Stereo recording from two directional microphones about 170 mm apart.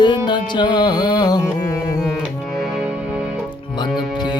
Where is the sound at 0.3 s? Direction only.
25° left (ahead or behind).